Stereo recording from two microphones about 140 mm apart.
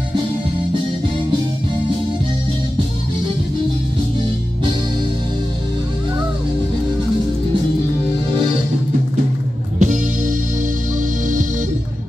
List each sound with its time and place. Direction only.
9.8 s music: 65° right (ahead or behind)